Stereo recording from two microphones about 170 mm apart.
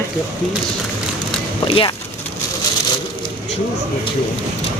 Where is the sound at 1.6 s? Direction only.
30° left (ahead or behind).